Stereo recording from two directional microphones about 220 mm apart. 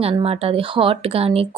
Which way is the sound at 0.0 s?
25° right (ahead or behind).